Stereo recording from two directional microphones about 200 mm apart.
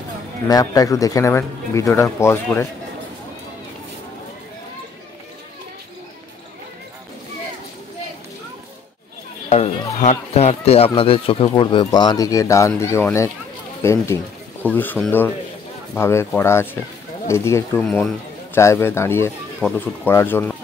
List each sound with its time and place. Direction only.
0.5 s speech: 15° left (ahead or behind)
10.0 s speech: 30° left (ahead or behind); by 20.5 s 10° left (ahead or behind)